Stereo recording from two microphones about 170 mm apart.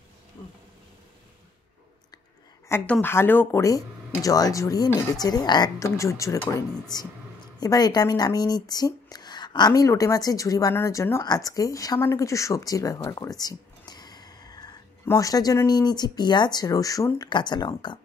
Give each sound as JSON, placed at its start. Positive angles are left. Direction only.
{"t": 2.7, "sound": "speech", "side_deg": 10}